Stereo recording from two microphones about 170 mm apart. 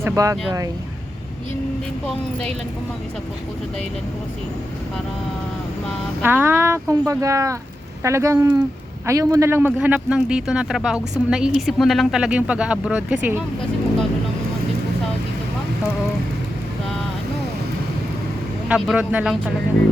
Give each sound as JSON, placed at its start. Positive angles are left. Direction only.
{"t": 0.0, "sound": "speech", "side_deg": -15}
{"t": 6.2, "sound": "speech", "side_deg": -10}
{"t": 18.7, "sound": "speech", "side_deg": -10}